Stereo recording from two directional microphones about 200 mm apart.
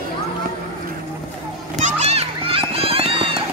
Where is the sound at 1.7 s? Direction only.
35° right (ahead or behind).